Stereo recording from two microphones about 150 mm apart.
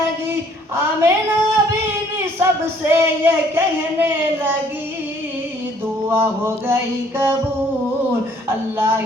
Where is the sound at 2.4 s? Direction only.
15° right (ahead or behind).